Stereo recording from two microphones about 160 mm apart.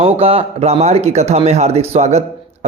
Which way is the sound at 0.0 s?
40° right (ahead or behind).